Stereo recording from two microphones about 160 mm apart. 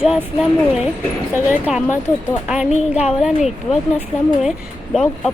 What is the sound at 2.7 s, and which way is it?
Speech, 45° left (ahead or behind).